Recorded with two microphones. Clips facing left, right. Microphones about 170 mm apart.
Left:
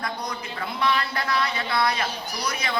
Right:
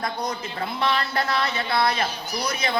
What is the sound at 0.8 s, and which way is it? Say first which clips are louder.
A man's voice: right 1 dB; 25° right (ahead or behind).